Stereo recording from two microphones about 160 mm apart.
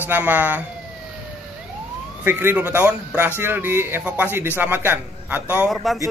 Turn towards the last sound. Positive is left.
turn(degrees=0)  # may be behind; listen again after turning